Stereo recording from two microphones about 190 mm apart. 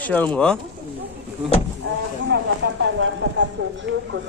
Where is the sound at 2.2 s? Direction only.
70° right (ahead or behind).